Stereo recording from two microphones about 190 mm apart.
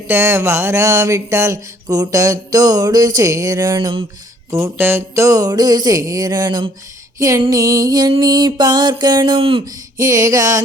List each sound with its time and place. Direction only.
0.1 s speech: 15° right (ahead or behind)
4.5 s music: 15° right (ahead or behind)